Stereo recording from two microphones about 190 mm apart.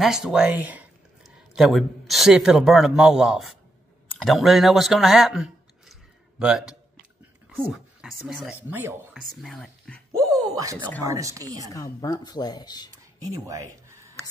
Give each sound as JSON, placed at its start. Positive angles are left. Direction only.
{"t": 0.0, "sound": "a man's voice", "side_deg": -5}
{"t": 9.3, "sound": "a man's voice", "side_deg": 5}
{"t": 10.1, "sound": "a sound", "side_deg": -20}
{"t": 11.0, "sound": "speech", "side_deg": -15}
{"t": 11.7, "sound": "speech", "side_deg": 20}
{"t": 13.3, "sound": "speech", "side_deg": -15}